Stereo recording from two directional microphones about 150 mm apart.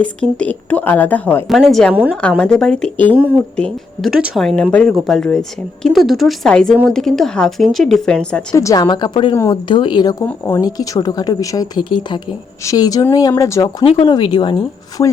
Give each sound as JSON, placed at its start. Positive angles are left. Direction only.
{"t": 0.0, "sound": "a woman's voice", "side_deg": 10}
{"t": 1.5, "sound": "speech", "side_deg": 0}
{"t": 1.9, "sound": "a woman's voice", "side_deg": -10}
{"t": 2.4, "sound": "speech", "side_deg": 5}
{"t": 8.5, "sound": "speech", "side_deg": 25}
{"t": 13.8, "sound": "speech", "side_deg": 35}
{"t": 15.0, "sound": "speech", "side_deg": 20}